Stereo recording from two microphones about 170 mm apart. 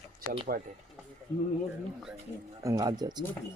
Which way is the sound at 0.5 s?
55° right (ahead or behind).